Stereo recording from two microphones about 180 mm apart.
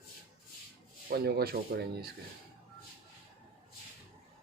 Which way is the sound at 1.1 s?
60° right (ahead or behind).